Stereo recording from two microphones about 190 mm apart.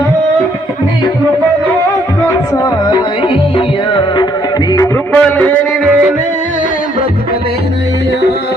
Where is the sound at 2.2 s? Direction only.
20° left (ahead or behind).